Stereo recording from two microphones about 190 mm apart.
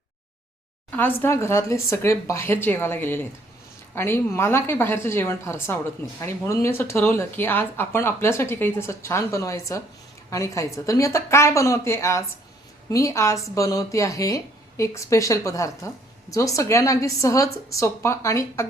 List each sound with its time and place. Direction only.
0.9 s a woman's voice: 10° left (ahead or behind)